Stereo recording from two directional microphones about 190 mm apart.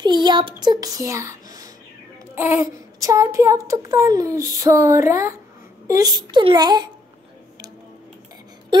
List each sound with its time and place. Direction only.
0.0 s a child's voice: 25° right (ahead or behind)